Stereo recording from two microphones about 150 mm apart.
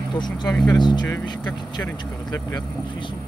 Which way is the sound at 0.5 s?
5° left (ahead or behind).